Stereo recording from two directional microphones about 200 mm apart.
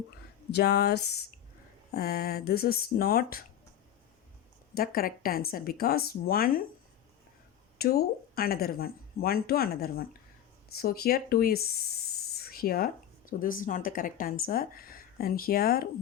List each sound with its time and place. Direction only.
0.5 s speech: 55° left (ahead or behind)
4.7 s speech: 50° left (ahead or behind)
7.8 s speech: 50° left (ahead or behind)